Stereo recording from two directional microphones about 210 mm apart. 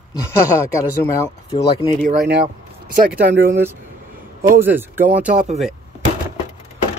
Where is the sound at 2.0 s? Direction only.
45° right (ahead or behind).